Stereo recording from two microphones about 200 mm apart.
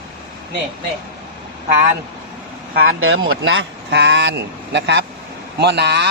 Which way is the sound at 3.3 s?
60° right (ahead or behind).